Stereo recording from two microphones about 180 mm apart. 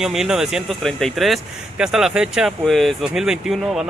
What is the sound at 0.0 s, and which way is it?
Speech, 5° right (ahead or behind).